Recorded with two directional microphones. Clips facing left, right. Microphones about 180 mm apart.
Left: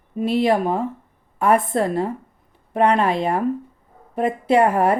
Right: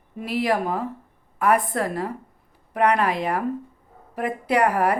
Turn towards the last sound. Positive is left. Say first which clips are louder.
# left 4 dB
turn(degrees=25)  # may be behind; listen again after turning